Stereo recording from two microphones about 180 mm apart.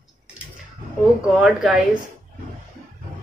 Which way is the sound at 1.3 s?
5° right (ahead or behind).